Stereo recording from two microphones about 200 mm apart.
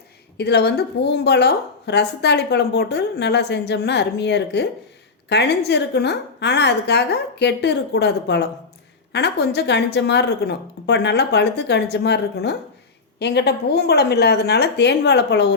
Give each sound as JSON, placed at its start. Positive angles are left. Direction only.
{"t": 0.3, "sound": "a woman's voice", "side_deg": 55}